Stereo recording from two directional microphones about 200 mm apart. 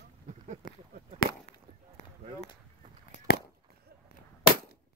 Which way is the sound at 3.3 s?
55° left (ahead or behind).